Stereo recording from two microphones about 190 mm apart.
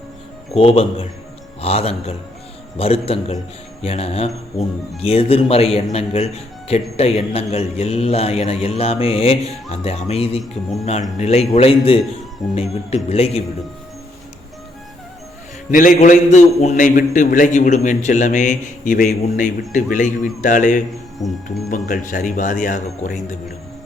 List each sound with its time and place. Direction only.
0.5 s a man's voice: 30° left (ahead or behind)
15.7 s a man's voice: 40° left (ahead or behind)
21.2 s speech: centre (ahead or behind)
21.7 s speech: 45° left (ahead or behind)